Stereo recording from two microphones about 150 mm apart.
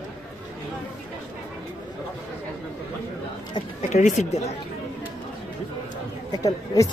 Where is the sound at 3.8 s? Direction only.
55° left (ahead or behind).